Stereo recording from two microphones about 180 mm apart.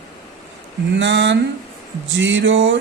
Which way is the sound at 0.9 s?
90° right.